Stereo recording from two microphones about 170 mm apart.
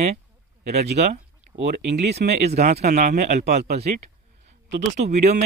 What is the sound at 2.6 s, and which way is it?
Speech, 65° right (ahead or behind).